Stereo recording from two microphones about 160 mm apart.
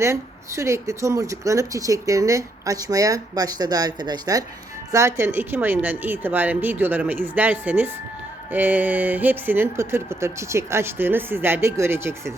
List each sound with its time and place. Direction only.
0.0 s speech: 15° right (ahead or behind)